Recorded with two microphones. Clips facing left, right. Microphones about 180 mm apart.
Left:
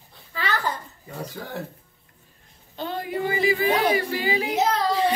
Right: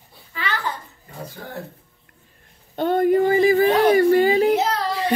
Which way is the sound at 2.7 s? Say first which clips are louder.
Right 12 dB; 55° right (ahead or behind).